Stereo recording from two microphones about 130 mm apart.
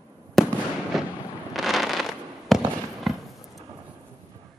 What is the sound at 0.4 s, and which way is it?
Fireworks, centre (ahead or behind).